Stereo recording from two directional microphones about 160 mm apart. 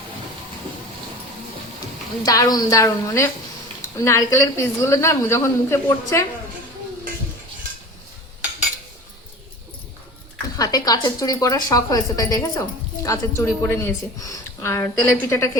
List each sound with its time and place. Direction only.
2.2 s a woman's voice: 20° left (ahead or behind)
10.6 s a woman's voice: 25° left (ahead or behind)